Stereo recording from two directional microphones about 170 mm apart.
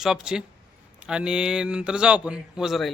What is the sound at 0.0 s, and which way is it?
Speech, 5° right (ahead or behind).